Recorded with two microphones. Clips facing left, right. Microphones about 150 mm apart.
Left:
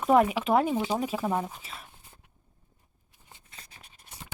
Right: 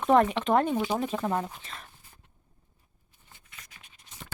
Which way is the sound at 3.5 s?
30° left (ahead or behind).